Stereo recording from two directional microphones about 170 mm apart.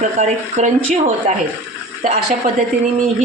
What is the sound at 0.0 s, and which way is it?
A woman's voice, 45° right (ahead or behind).